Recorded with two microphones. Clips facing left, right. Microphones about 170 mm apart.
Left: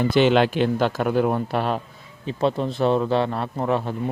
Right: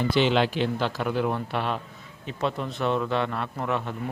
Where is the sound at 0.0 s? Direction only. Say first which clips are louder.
Left 5 dB; 50° left (ahead or behind).